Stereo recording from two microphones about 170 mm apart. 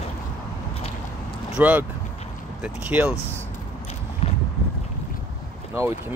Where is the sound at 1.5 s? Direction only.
10° right (ahead or behind).